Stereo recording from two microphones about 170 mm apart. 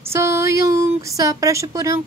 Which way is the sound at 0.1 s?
15° right (ahead or behind).